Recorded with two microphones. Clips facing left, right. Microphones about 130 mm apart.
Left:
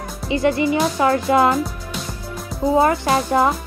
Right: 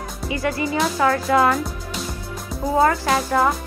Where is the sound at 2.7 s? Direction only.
20° left (ahead or behind).